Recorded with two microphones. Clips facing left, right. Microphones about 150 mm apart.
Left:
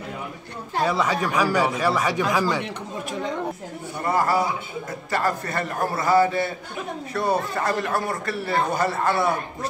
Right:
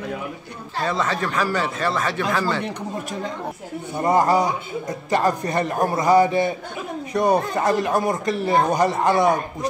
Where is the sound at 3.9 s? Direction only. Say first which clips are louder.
Right 4 dB; 20° right (ahead or behind).